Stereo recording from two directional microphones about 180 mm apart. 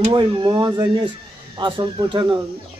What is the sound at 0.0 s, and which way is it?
Speech, 25° right (ahead or behind).